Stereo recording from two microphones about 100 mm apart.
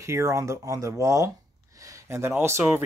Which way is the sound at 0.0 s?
30° right (ahead or behind).